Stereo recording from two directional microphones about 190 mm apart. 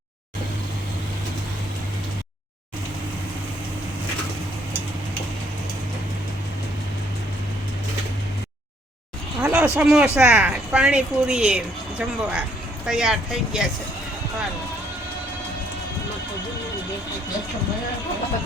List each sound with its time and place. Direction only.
9.4 s speech: 10° right (ahead or behind)